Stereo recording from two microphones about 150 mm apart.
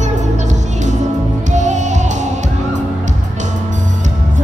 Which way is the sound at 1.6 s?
55° right (ahead or behind).